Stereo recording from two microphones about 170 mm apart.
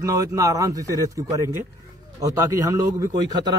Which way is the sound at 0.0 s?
20° right (ahead or behind).